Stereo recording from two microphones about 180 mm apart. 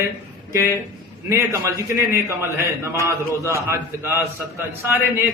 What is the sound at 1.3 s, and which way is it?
A man's voice, 15° right (ahead or behind).